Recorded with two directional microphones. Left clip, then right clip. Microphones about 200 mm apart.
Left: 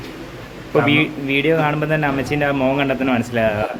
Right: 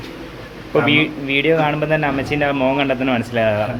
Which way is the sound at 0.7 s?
20° left (ahead or behind).